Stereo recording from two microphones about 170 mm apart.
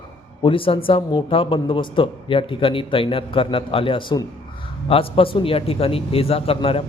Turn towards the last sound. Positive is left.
turn(degrees=35)  # may be behind; listen again after turning